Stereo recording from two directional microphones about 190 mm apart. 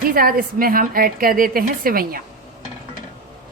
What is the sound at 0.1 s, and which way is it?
A woman's voice, 50° right (ahead or behind).